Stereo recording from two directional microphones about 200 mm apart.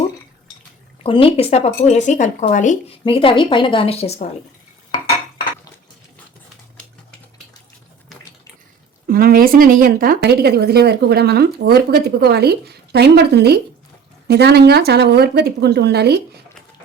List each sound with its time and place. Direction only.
1.0 s speech: 25° left (ahead or behind)
9.0 s speech: 45° right (ahead or behind)